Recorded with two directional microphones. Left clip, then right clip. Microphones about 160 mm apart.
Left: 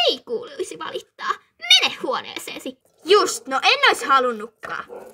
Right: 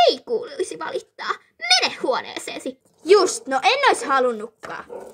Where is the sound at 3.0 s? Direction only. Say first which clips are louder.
Right 1 dB; 15° left (ahead or behind).